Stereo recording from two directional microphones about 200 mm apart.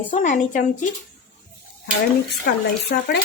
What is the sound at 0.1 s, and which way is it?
Speech, 40° left (ahead or behind).